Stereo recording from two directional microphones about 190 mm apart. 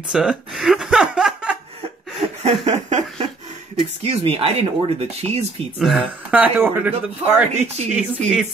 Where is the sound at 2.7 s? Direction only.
35° right (ahead or behind).